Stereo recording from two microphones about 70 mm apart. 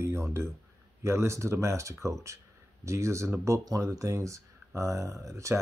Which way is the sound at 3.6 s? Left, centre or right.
Right.